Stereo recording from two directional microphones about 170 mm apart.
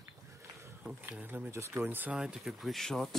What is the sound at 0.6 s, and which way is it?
Speech, 5° right (ahead or behind).